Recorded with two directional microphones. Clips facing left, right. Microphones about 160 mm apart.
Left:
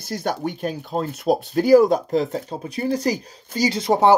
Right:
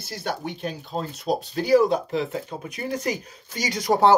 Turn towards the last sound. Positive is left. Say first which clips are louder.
# left 2 dB
turn(degrees=20)  # may be behind; listen again after turning